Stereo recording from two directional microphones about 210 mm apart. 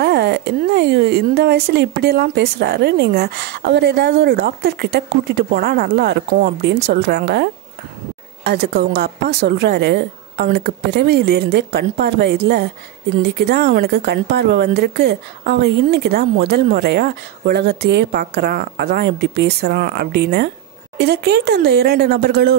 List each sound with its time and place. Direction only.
0.0 s speech: 50° right (ahead or behind)
8.5 s speech: 50° right (ahead or behind)